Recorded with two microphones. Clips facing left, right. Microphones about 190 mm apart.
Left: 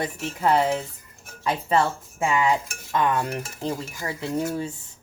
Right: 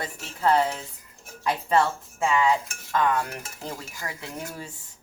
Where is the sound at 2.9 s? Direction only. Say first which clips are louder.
Left 1 dB; 20° left (ahead or behind).